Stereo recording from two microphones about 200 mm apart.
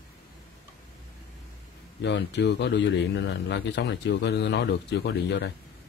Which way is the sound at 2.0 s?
60° left (ahead or behind).